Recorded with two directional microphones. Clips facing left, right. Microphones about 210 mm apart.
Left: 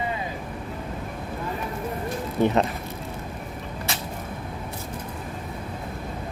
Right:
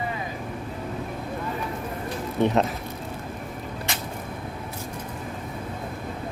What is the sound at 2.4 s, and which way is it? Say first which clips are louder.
Speech: even; centre (ahead or behind).